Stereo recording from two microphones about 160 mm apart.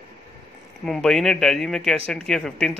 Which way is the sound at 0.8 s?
5° left (ahead or behind).